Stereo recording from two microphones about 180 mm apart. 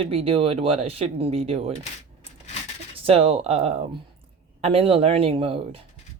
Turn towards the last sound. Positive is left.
turn(degrees=-30)  # may be behind; listen again after turning